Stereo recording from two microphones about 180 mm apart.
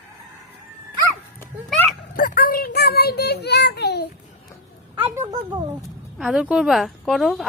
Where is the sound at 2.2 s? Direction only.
50° left (ahead or behind).